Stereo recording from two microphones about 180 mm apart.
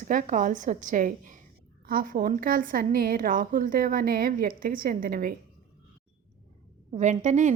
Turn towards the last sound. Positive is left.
turn(degrees=-40)  # may be behind; listen again after turning